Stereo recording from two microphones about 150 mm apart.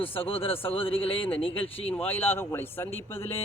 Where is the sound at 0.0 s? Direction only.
35° left (ahead or behind).